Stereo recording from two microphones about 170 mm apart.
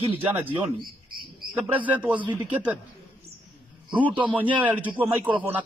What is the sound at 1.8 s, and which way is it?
Speech, 10° right (ahead or behind).